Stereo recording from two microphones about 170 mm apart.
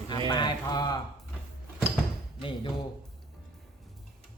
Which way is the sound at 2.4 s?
30° left (ahead or behind).